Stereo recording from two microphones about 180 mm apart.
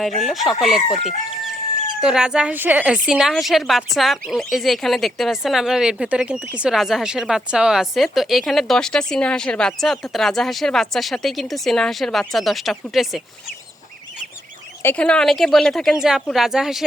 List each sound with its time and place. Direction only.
0.2 s speech: centre (ahead or behind)
1.9 s speech: 5° right (ahead or behind)
14.8 s speech: 5° left (ahead or behind)